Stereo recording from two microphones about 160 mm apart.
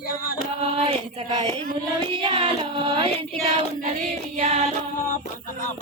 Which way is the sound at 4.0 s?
45° right (ahead or behind).